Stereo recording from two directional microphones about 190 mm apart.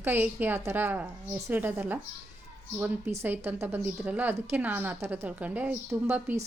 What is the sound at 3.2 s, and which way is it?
Speech, 10° right (ahead or behind).